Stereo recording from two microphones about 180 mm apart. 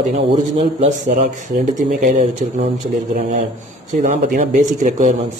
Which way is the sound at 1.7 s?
45° right (ahead or behind).